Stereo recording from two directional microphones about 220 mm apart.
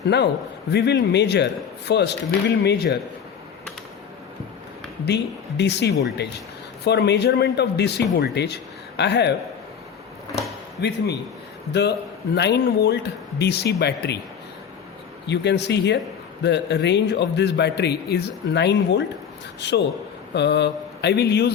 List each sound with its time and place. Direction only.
0.1 s a man's voice: 50° left (ahead or behind)
5.0 s a man's voice: 50° left (ahead or behind)
10.8 s a man's voice: 50° left (ahead or behind)
15.3 s a man's voice: 50° left (ahead or behind)